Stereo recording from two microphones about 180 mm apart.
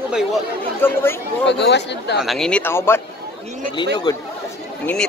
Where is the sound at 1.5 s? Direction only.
70° left (ahead or behind).